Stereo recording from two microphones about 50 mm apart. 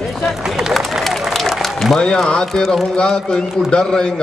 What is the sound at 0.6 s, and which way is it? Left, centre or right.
Run, centre.